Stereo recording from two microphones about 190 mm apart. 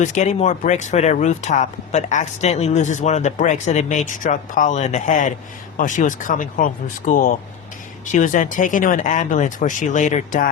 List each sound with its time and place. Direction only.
0.0 s speech: 40° left (ahead or behind)